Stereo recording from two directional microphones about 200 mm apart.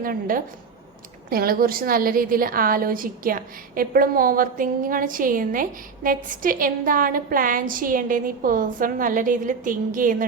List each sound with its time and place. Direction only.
0.0 s a woman's voice: 45° right (ahead or behind)